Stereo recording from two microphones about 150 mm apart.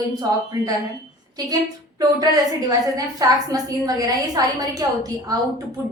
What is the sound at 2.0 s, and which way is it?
A woman's voice, 25° right (ahead or behind).